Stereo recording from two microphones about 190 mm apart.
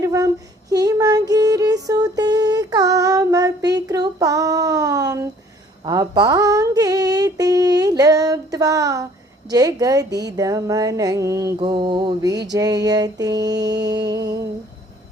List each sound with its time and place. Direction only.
0.0 s female singing: 15° right (ahead or behind)
0.7 s child singing: 20° right (ahead or behind)
1.3 s music: 20° right (ahead or behind)
5.8 s a sound: 20° right (ahead or behind)
9.5 s mantra: 20° right (ahead or behind)
14.1 s a sound: 20° right (ahead or behind)